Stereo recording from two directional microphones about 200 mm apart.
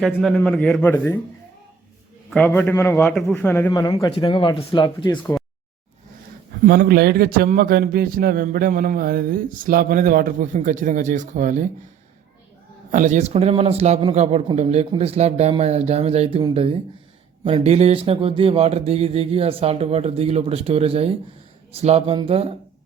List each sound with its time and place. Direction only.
0.0 s a man's voice: centre (ahead or behind)
2.3 s a man's voice: 10° left (ahead or behind)
5.1 s a man's voice: 10° left (ahead or behind)
6.7 s a man's voice: 50° right (ahead or behind)
12.9 s a man's voice: 40° right (ahead or behind)